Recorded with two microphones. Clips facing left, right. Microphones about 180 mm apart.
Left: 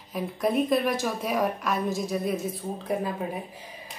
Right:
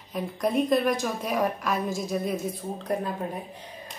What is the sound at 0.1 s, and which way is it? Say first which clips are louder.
Speech: even; centre (ahead or behind).